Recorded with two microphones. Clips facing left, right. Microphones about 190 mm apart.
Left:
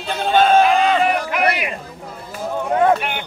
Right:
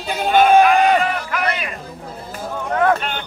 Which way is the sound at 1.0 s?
20° left (ahead or behind).